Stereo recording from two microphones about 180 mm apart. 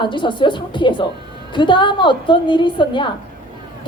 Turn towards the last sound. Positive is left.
turn(degrees=25)  # may be behind; listen again after turning